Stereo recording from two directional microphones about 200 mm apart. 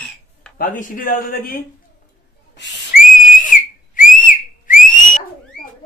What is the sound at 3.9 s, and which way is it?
Whistle, 40° left (ahead or behind).